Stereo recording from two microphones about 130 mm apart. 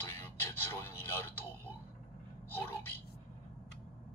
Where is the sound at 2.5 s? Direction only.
15° left (ahead or behind).